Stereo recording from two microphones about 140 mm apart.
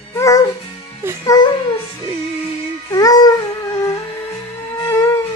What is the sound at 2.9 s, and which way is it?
Music, 25° left (ahead or behind).